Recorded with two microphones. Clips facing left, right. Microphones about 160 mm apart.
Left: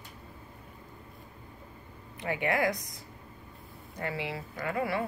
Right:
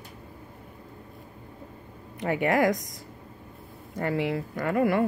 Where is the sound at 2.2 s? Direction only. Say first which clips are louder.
Right 6 dB; 45° right (ahead or behind).